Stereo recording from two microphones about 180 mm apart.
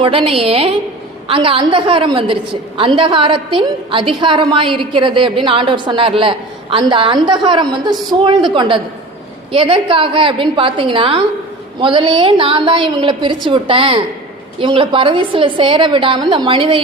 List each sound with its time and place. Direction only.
0.0 s a woman's voice: 30° right (ahead or behind)